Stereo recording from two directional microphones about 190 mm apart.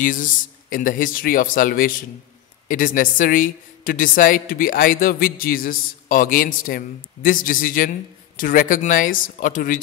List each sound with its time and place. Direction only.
0.0 s a woman's voice: 45° left (ahead or behind)